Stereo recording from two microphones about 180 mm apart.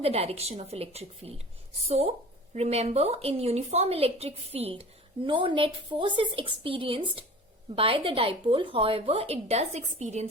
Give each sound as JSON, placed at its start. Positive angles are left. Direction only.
{"t": 0.0, "sound": "speech", "side_deg": -35}